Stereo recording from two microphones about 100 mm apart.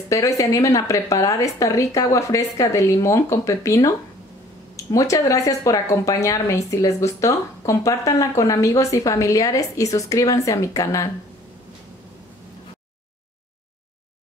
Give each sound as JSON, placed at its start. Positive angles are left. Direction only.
{"t": 0.1, "sound": "speech", "side_deg": 30}